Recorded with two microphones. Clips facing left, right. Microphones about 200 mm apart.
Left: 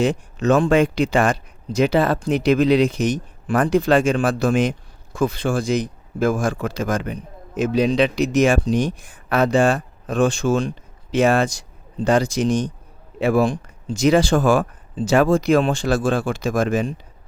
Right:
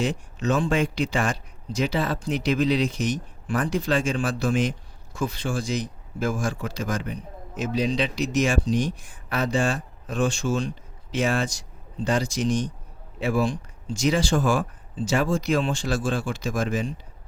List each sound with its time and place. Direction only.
0.0 s speech: 60° left (ahead or behind)